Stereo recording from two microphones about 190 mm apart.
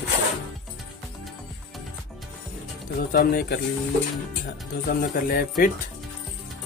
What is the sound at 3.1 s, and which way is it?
Speech, 50° left (ahead or behind).